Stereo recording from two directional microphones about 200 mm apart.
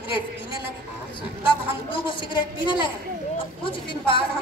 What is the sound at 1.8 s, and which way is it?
A woman's voice, 25° left (ahead or behind).